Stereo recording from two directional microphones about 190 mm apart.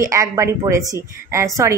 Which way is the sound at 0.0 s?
15° right (ahead or behind).